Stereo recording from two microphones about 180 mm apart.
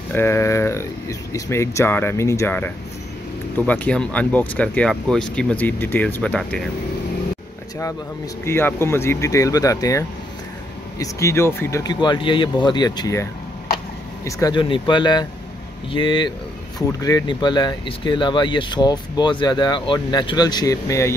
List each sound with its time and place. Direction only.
0.1 s speech: 15° left (ahead or behind)
8.5 s speech: 15° left (ahead or behind)